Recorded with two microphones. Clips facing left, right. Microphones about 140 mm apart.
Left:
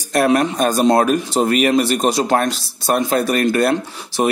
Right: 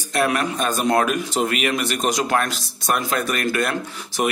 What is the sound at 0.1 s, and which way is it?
Speech, 40° left (ahead or behind).